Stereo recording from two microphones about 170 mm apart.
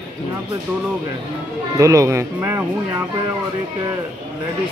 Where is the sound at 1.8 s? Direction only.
20° right (ahead or behind).